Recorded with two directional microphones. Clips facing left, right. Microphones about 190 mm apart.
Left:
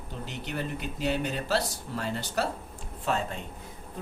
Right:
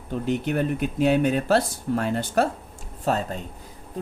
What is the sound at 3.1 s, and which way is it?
Speech, 40° right (ahead or behind).